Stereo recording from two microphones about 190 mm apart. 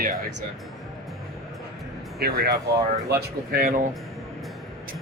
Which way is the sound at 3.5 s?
50° right (ahead or behind).